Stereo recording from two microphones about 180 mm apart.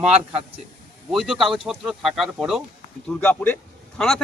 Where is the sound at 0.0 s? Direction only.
35° right (ahead or behind).